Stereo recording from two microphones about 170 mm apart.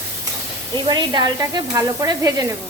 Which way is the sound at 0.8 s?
25° right (ahead or behind).